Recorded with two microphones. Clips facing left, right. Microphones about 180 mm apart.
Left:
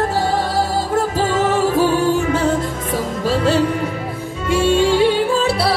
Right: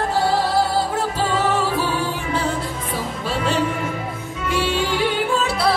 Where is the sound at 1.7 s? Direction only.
45° left (ahead or behind).